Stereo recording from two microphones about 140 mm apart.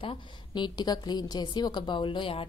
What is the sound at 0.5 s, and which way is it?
A woman's voice, 30° left (ahead or behind).